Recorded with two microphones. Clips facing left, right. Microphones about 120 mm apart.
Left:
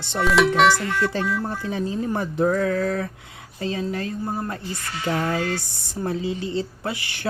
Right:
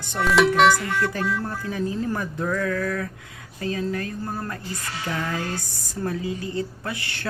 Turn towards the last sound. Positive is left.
turn(degrees=20)  # may be behind; listen again after turning